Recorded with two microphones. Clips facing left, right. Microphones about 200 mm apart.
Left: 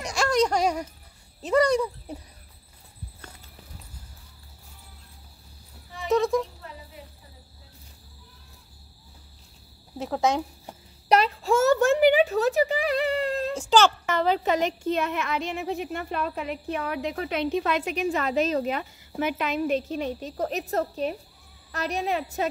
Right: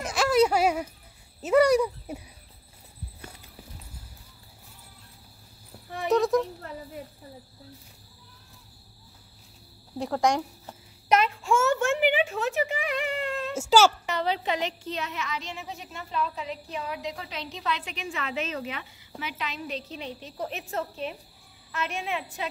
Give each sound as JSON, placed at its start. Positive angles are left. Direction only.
{"t": 0.0, "sound": "a sound", "side_deg": -5}
{"t": 1.4, "sound": "speech", "side_deg": -5}
{"t": 6.0, "sound": "speech", "side_deg": 0}
{"t": 9.9, "sound": "speech", "side_deg": 5}
{"t": 11.1, "sound": "a child's voice", "side_deg": 35}
{"t": 13.6, "sound": "speech", "side_deg": -5}
{"t": 14.0, "sound": "a woman's voice", "side_deg": 50}